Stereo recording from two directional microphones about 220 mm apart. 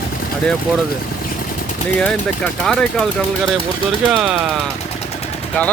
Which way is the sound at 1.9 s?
5° left (ahead or behind).